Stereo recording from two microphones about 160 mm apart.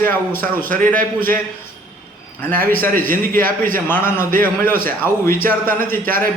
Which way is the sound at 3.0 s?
60° right (ahead or behind).